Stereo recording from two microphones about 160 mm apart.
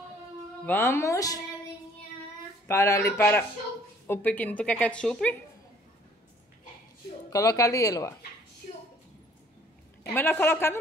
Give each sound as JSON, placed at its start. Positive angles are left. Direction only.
{"t": 0.7, "sound": "a woman's voice", "side_deg": 15}
{"t": 2.7, "sound": "a woman's voice", "side_deg": 15}
{"t": 7.2, "sound": "speech", "side_deg": 20}
{"t": 10.1, "sound": "a woman's voice", "side_deg": 15}